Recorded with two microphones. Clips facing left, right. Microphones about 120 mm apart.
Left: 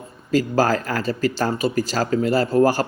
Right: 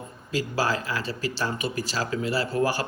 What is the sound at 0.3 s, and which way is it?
Speech, 45° left (ahead or behind).